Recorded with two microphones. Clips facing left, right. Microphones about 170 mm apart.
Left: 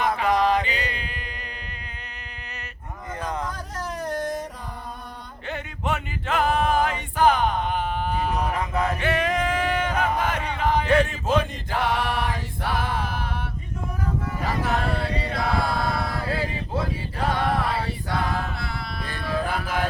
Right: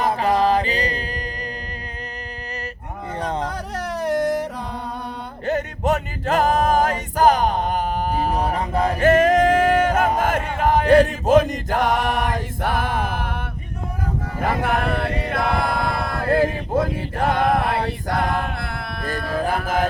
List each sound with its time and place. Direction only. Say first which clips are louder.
0.0 s music: right 3 dB; 30° right (ahead or behind)
3.1 s a sound: right 4 dB; 30° right (ahead or behind)
3.5 s music: right 5 dB; 70° right (ahead or behind)
5.5 s music: right 8 dB; 40° right (ahead or behind)
14.4 s chant: right 5 dB; 55° right (ahead or behind)